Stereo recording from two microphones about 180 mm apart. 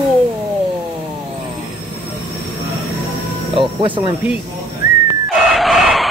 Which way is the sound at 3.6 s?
30° right (ahead or behind).